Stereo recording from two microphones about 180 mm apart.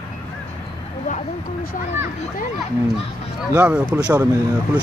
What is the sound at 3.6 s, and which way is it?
Speech, 5° right (ahead or behind).